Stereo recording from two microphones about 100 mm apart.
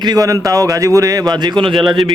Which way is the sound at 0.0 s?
40° right (ahead or behind).